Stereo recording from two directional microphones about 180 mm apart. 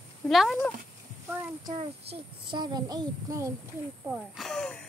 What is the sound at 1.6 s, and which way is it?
A child's voice, 30° right (ahead or behind).